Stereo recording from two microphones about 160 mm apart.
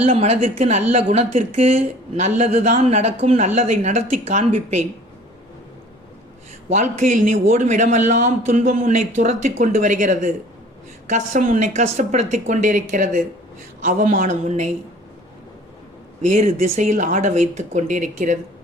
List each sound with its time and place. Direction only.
0.0 s a woman's voice: 40° right (ahead or behind)
6.9 s speech: 50° right (ahead or behind)
16.3 s speech: 45° right (ahead or behind)